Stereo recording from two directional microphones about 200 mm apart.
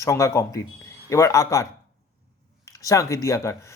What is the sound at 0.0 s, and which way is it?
A man's voice, 15° left (ahead or behind).